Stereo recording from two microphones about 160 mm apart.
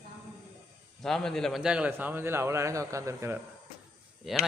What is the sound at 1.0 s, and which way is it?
A man's voice, 5° left (ahead or behind).